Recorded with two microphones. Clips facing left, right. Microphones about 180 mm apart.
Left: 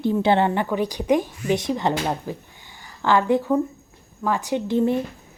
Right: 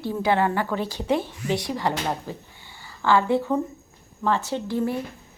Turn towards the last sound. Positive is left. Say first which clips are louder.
# left 5 dB
turn(degrees=20)  # may be behind; listen again after turning